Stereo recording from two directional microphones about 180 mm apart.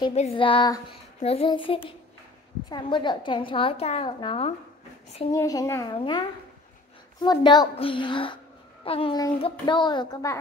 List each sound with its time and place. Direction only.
0.1 s a woman's voice: 35° left (ahead or behind)
1.2 s a woman's voice: 35° left (ahead or behind)
5.3 s a woman's voice: 20° left (ahead or behind)